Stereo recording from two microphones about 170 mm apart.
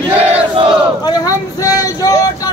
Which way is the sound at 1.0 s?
25° left (ahead or behind).